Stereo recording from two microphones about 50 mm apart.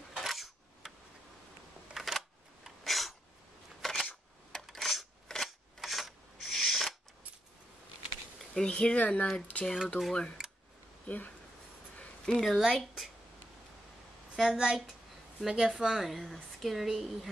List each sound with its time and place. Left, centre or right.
0.1 s dishes: centre
2.0 s a sound: centre
3.8 s camera: centre
4.6 s a sound: centre
5.3 s filing: centre
5.8 s a sound: centre
8.6 s speech: left
10.4 s a sound: centre
11.1 s speech: left
12.3 s speech: centre
12.5 s a woman's voice: centre
14.3 s a woman's voice: centre